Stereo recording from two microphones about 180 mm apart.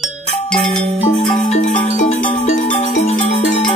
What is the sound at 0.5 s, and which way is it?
Music, 5° left (ahead or behind).